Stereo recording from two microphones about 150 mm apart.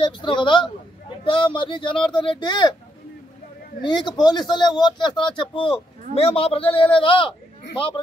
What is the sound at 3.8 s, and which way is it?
Speech, 30° left (ahead or behind).